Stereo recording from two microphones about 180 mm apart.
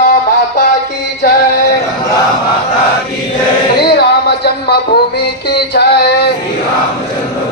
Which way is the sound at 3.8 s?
65° left (ahead or behind).